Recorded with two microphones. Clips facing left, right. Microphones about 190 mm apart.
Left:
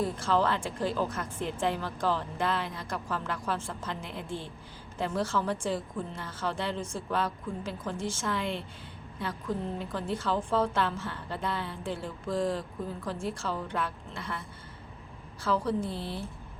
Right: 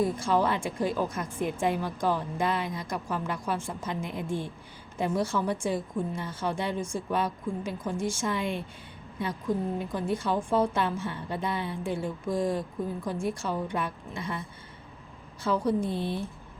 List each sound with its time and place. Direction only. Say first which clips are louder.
0.0 s a woman's voice: right 2 dB; 15° right (ahead or behind)
15.4 s a woman's voice: right 3 dB; 20° right (ahead or behind)